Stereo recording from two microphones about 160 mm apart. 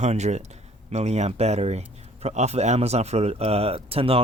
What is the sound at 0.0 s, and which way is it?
Speech, 45° right (ahead or behind).